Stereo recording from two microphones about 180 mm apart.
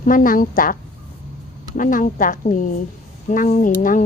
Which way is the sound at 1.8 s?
45° left (ahead or behind).